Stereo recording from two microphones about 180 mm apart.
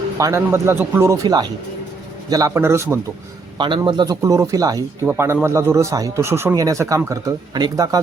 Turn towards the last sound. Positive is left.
turn(degrees=-20)  # may be behind; listen again after turning